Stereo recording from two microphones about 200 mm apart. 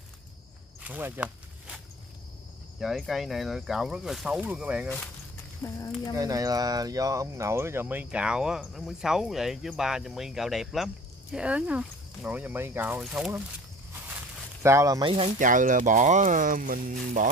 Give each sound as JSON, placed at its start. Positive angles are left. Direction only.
{"t": 0.8, "sound": "walk", "side_deg": -10}
{"t": 2.8, "sound": "speech", "side_deg": 0}
{"t": 5.6, "sound": "speech", "side_deg": 10}
{"t": 6.1, "sound": "speech", "side_deg": -15}